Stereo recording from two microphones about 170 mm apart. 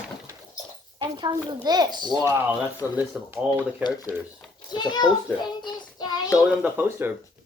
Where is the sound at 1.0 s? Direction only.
25° right (ahead or behind).